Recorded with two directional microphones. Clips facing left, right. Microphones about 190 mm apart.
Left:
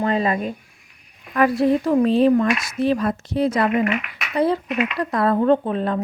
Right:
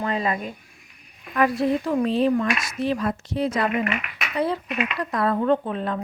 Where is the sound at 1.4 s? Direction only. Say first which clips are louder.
Left 4 dB; 50° left (ahead or behind).